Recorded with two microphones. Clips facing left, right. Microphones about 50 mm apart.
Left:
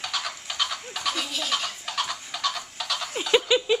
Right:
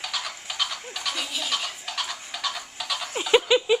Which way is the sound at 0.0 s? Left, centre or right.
Centre.